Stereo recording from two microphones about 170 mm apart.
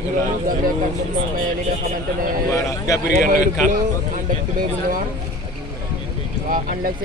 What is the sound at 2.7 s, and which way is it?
Speech, 20° left (ahead or behind).